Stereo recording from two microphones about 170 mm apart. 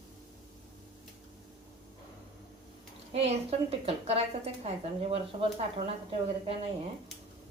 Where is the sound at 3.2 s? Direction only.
35° right (ahead or behind).